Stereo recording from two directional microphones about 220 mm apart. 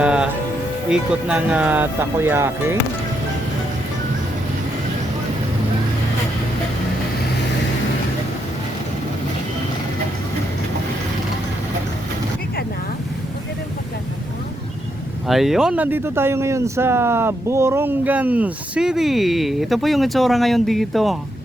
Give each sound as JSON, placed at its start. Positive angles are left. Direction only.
{"t": 0.0, "sound": "music", "side_deg": -5}
{"t": 0.9, "sound": "speech", "side_deg": -5}
{"t": 15.3, "sound": "speech", "side_deg": 0}